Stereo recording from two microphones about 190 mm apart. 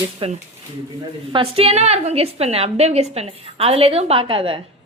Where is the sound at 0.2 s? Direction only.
25° right (ahead or behind).